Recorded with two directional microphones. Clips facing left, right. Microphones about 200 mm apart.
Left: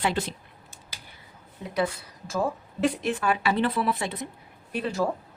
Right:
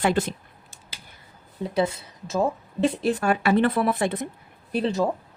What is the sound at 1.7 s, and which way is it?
A woman's voice, 25° right (ahead or behind).